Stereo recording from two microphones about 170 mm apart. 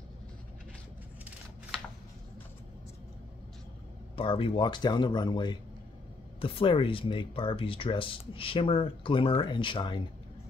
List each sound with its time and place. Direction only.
4.2 s speech: 30° left (ahead or behind)